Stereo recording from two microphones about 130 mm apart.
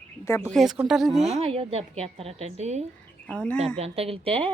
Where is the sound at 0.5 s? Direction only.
5° right (ahead or behind).